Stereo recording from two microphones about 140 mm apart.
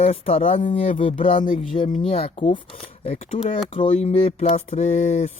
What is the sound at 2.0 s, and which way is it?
Speech, 45° left (ahead or behind).